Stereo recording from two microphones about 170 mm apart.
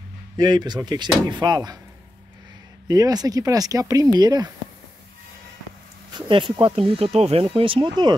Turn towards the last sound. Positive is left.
turn(degrees=-30)  # may be behind; listen again after turning